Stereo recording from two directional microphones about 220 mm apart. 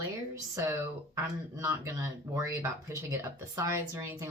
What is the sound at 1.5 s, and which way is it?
Speech, 15° right (ahead or behind).